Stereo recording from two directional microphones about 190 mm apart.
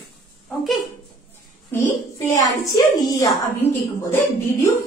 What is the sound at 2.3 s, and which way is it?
A woman's voice, 20° left (ahead or behind).